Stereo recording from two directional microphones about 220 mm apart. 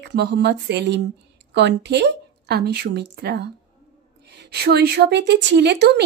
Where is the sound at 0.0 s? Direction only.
50° right (ahead or behind).